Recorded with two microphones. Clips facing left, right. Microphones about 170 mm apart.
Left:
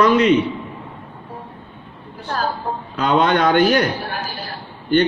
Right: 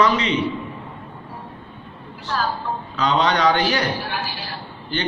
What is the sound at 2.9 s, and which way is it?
A man's voice, 50° left (ahead or behind).